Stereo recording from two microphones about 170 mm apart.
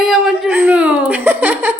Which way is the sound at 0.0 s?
Centre (ahead or behind).